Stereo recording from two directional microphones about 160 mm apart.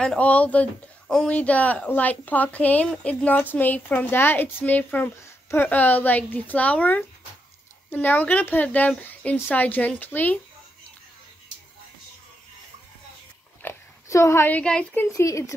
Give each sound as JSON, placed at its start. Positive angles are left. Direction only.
{"t": 0.0, "sound": "speech", "side_deg": 5}
{"t": 13.6, "sound": "speech", "side_deg": 15}
{"t": 15.0, "sound": "speech", "side_deg": 20}